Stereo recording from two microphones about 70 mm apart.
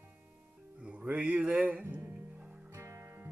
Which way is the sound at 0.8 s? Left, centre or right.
Centre.